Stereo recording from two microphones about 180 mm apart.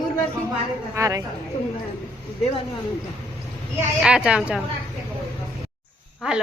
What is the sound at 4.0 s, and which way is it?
Speech, 5° right (ahead or behind).